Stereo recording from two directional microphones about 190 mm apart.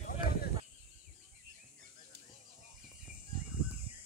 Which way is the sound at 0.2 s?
50° left (ahead or behind).